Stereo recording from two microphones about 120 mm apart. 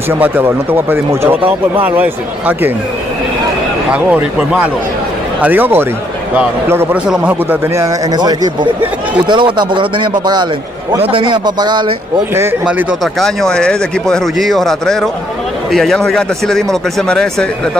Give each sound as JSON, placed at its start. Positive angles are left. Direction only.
{"t": 0.2, "sound": "speech", "side_deg": -15}
{"t": 3.9, "sound": "speech", "side_deg": -10}
{"t": 8.1, "sound": "speech", "side_deg": -35}
{"t": 13.0, "sound": "speech", "side_deg": 5}